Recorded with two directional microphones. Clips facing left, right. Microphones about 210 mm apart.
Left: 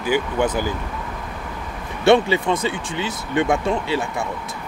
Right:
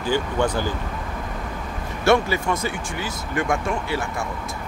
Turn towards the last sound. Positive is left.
turn(degrees=20)  # may be behind; listen again after turning